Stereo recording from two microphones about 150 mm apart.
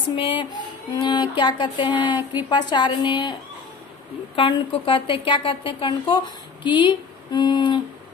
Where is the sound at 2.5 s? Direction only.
30° left (ahead or behind).